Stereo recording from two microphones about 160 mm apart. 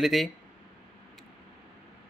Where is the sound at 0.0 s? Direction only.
Centre (ahead or behind).